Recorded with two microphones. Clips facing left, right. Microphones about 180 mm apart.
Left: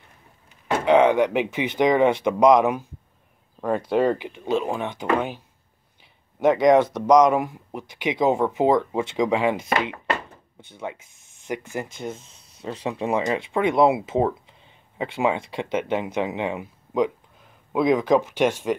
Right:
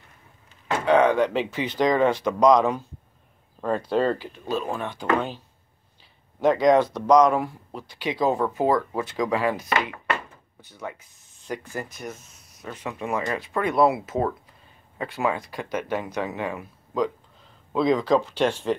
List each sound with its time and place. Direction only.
0.7 s speech: 20° left (ahead or behind)
6.4 s speech: 15° left (ahead or behind)
9.8 s a sound: 20° left (ahead or behind)
11.4 s speech: 20° left (ahead or behind)